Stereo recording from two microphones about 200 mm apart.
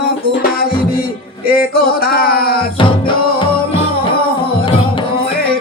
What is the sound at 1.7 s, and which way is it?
Speech, 50° left (ahead or behind).